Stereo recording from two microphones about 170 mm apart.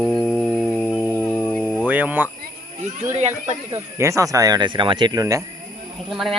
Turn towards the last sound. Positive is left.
turn(degrees=0)  # may be behind; listen again after turning